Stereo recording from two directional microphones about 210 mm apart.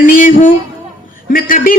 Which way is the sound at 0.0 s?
40° left (ahead or behind).